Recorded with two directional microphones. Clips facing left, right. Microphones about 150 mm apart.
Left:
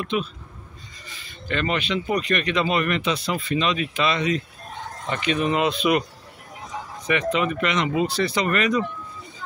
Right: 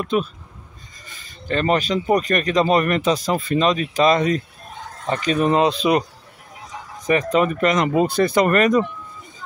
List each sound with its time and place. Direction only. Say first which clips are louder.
0.0 s speech: right 4 dB; 45° right (ahead or behind)
7.1 s speech: right 5 dB; 40° right (ahead or behind)